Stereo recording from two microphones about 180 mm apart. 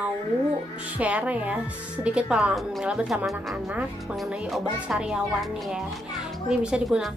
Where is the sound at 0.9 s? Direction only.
10° right (ahead or behind).